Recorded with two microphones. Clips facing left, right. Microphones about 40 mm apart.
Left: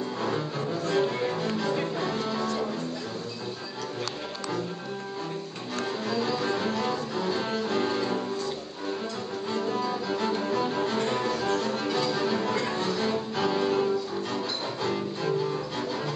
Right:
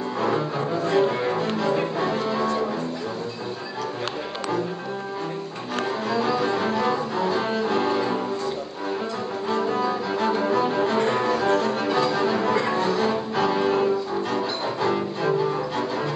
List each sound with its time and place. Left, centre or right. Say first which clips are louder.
0.2 s cello: right 8 dB; centre
1.6 s music: right 5 dB; centre
2.4 s music: right 5 dB; right
6.0 s cello: right 5 dB; centre
9.5 s cello: right 5 dB; centre